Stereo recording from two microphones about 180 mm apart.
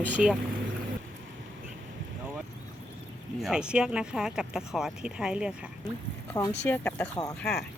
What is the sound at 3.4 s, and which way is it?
Speech, 5° right (ahead or behind).